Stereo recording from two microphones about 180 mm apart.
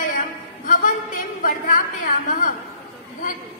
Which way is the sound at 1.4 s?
50° left (ahead or behind).